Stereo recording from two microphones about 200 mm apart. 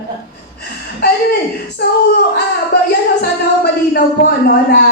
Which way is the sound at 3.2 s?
55° left (ahead or behind).